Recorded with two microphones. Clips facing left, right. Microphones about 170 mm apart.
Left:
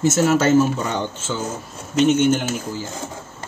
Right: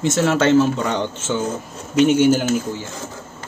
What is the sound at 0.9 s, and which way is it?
Speech, 20° right (ahead or behind).